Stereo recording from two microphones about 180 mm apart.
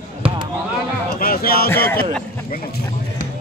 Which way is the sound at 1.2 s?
55° left (ahead or behind).